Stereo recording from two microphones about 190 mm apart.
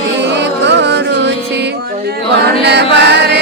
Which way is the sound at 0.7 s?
65° right (ahead or behind).